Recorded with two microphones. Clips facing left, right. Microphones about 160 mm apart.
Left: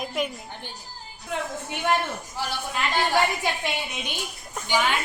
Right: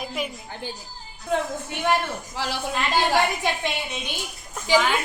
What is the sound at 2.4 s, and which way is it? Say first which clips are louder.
Speech: right 2 dB; 90° right.